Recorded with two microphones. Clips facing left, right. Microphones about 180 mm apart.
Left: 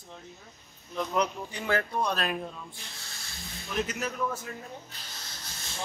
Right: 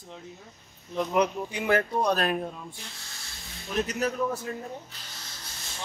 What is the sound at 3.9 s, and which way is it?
Speech, 35° right (ahead or behind).